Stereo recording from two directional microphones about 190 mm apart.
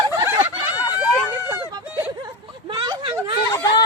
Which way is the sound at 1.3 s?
15° right (ahead or behind).